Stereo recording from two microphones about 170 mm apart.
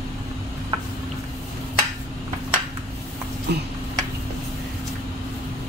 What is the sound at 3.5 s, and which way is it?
Speech, 75° right (ahead or behind).